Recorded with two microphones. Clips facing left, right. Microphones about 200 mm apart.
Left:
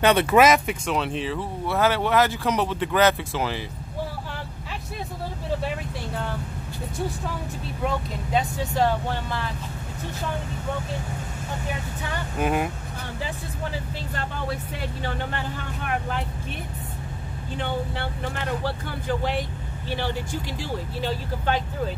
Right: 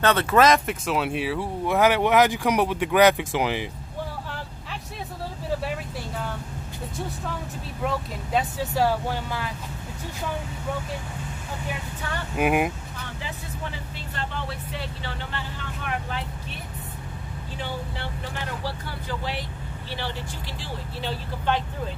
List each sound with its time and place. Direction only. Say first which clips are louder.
0.0 s speech: left 2 dB; 15° left (ahead or behind); by 3.6 s 15° right (ahead or behind)
7.8 s speech: left 1 dB; centre (ahead or behind)
12.4 s speech: right 2 dB; 15° right (ahead or behind)
18.6 s speech: left 3 dB; 50° left (ahead or behind)